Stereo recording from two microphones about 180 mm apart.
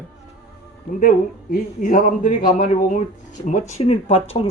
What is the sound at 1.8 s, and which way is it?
A woman's voice, 45° left (ahead or behind).